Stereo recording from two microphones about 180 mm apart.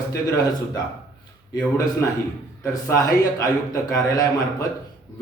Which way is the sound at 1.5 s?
20° left (ahead or behind).